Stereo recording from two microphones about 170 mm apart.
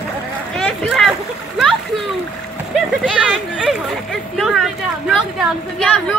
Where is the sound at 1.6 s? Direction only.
Centre (ahead or behind).